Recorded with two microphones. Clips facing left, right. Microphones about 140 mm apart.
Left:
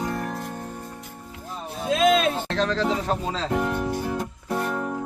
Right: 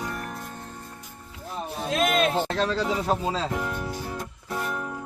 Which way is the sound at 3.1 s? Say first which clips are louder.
Right 1 dB; 10° right (ahead or behind).